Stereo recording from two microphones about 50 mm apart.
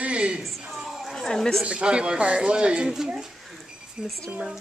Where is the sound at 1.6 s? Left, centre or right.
Centre.